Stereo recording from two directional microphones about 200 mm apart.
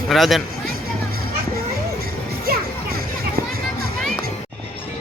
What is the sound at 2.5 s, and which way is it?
Music, 50° right (ahead or behind).